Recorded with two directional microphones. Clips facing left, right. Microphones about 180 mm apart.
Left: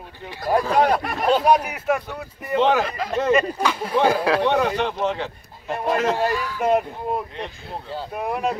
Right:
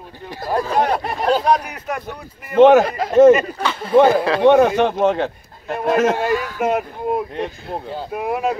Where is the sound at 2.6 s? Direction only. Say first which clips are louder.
Right 9 dB; 50° right (ahead or behind).